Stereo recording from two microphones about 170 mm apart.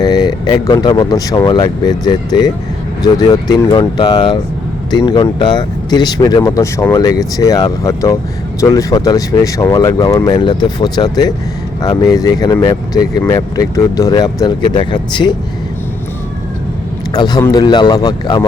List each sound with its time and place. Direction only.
0.0 s speech: 25° left (ahead or behind)
17.2 s speech: 25° left (ahead or behind)